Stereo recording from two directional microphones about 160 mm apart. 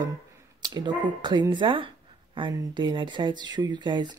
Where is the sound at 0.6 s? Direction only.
30° right (ahead or behind).